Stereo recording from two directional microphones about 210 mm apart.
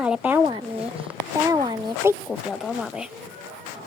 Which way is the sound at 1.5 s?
15° right (ahead or behind).